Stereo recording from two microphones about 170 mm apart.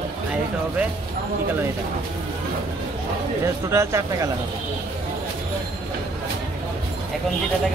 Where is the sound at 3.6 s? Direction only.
15° right (ahead or behind).